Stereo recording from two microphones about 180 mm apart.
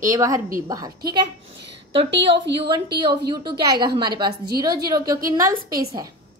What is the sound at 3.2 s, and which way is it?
A woman's voice, 25° right (ahead or behind).